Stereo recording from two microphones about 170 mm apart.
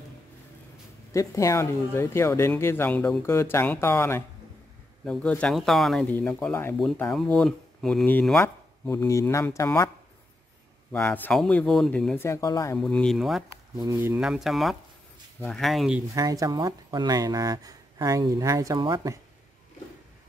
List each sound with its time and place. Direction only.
1.1 s speech: 20° left (ahead or behind)
10.9 s speech: 10° left (ahead or behind)
12.3 s speech: 20° left (ahead or behind)
12.7 s speech: 5° left (ahead or behind)
13.7 s speech: 20° right (ahead or behind); by 16.0 s centre (ahead or behind)
16.2 s speech: 20° right (ahead or behind)